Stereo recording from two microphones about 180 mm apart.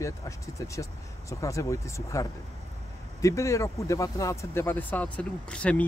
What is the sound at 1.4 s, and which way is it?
Speech, 15° left (ahead or behind).